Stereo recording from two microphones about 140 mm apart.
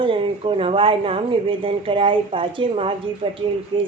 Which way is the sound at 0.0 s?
40° right (ahead or behind).